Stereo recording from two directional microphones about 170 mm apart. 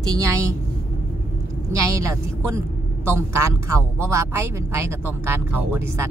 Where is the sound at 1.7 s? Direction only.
15° right (ahead or behind).